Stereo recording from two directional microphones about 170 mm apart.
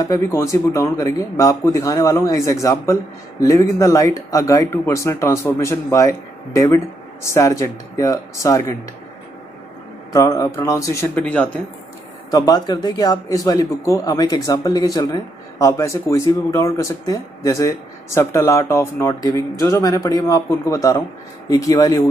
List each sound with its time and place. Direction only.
0.0 s speech: 20° left (ahead or behind)
10.1 s speech: 20° left (ahead or behind)
12.3 s speech: 25° left (ahead or behind)